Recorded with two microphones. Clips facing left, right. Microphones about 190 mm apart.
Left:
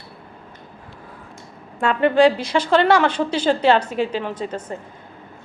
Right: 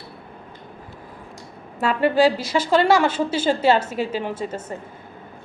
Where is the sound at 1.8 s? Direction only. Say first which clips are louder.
Left 2 dB; 5° right (ahead or behind).